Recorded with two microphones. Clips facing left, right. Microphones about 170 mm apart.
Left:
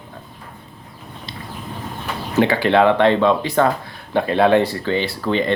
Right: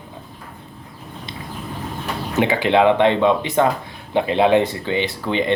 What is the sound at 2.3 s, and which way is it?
Speech, 20° right (ahead or behind).